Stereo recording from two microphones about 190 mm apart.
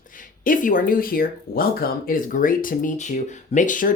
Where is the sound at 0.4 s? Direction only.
45° left (ahead or behind).